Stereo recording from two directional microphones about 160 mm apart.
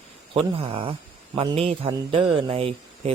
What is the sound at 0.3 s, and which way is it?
A man's voice, 35° right (ahead or behind).